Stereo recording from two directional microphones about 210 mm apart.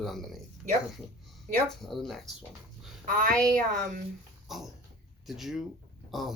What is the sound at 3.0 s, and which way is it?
Speech, 40° right (ahead or behind).